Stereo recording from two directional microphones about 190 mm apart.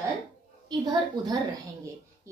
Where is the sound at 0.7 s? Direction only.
20° right (ahead or behind).